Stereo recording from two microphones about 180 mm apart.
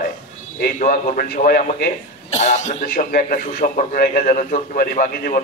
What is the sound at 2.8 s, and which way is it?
A man's voice, 55° left (ahead or behind).